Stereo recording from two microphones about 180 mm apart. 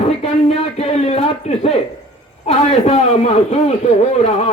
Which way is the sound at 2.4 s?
35° left (ahead or behind).